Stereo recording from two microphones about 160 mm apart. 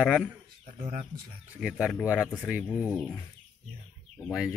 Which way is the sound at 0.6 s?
55° right (ahead or behind).